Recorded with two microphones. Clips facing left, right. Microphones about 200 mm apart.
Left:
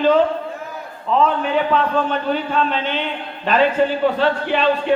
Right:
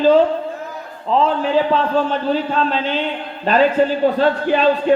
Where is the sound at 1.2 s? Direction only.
30° right (ahead or behind).